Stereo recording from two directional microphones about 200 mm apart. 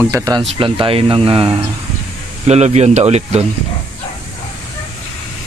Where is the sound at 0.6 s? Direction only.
25° right (ahead or behind).